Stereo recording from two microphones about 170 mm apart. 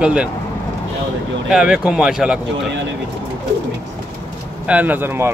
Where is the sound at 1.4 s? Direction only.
5° right (ahead or behind).